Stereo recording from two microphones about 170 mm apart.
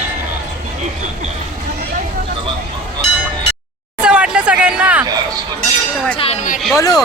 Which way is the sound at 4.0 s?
5° right (ahead or behind).